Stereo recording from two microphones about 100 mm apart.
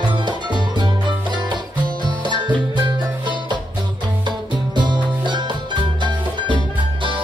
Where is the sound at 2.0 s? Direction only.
50° right (ahead or behind).